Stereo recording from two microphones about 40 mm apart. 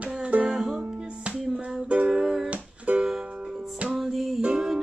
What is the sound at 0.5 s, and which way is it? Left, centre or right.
Music, centre.